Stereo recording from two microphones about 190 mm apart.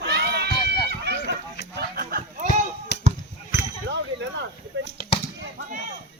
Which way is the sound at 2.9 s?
60° left (ahead or behind).